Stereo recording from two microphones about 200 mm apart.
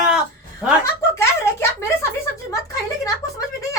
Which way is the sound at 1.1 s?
15° left (ahead or behind).